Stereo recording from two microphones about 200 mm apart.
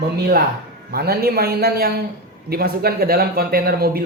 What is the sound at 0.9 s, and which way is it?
A man's voice, 50° right (ahead or behind).